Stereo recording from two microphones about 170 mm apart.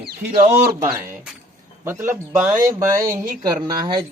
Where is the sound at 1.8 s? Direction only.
15° right (ahead or behind).